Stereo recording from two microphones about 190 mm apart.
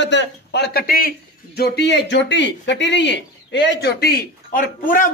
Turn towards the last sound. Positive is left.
turn(degrees=45)  # may be behind; listen again after turning